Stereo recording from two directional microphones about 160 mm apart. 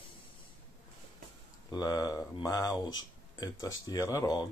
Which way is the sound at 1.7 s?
25° left (ahead or behind).